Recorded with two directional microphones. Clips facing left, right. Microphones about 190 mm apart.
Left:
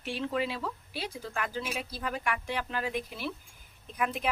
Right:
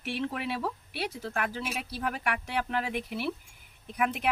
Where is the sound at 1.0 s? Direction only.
70° right (ahead or behind).